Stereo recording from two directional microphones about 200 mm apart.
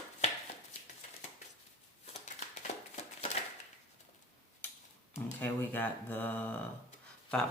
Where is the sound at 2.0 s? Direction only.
35° left (ahead or behind).